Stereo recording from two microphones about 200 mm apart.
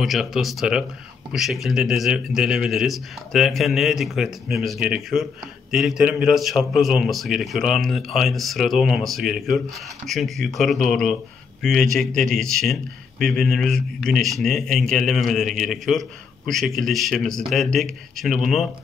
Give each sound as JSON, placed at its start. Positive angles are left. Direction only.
{"t": 0.0, "sound": "a man's voice", "side_deg": 0}